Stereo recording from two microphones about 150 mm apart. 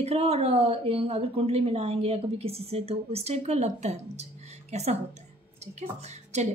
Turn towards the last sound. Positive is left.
turn(degrees=-50)  # may be behind; listen again after turning